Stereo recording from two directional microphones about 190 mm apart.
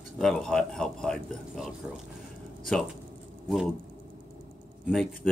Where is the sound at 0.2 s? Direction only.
5° left (ahead or behind).